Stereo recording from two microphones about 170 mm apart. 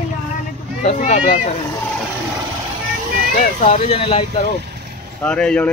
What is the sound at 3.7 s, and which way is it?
Speech, 35° left (ahead or behind).